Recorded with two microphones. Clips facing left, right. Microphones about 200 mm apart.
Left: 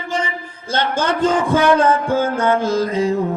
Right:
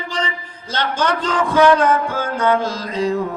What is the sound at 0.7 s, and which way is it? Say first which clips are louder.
A man's voice: left 1 dB; 50° left (ahead or behind).